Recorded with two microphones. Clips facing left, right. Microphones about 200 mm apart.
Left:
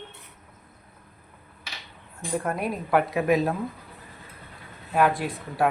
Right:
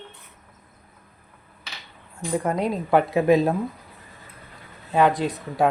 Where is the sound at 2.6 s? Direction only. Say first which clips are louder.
Right 3 dB; 25° right (ahead or behind).